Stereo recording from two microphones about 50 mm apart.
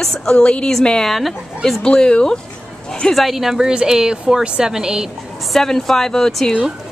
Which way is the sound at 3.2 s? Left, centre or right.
Centre.